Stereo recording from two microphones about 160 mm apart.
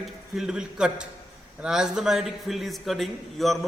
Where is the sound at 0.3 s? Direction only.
5° right (ahead or behind).